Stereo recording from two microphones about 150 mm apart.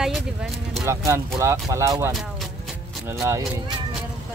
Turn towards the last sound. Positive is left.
turn(degrees=-20)  # may be behind; listen again after turning